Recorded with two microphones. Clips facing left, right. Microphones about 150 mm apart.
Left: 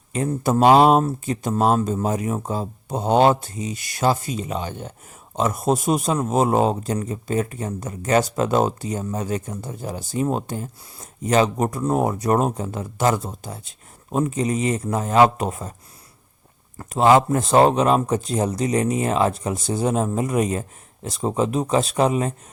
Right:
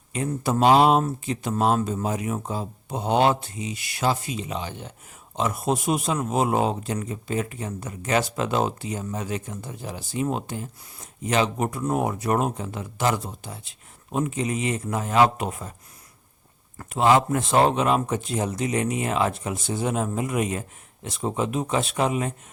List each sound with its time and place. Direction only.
0.1 s a man's voice: 40° left (ahead or behind)
16.7 s a man's voice: 40° left (ahead or behind)